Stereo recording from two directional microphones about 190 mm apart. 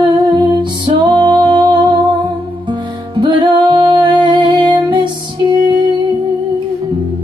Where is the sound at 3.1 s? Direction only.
25° right (ahead or behind).